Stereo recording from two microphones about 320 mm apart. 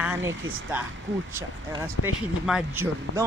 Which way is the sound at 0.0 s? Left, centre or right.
Centre.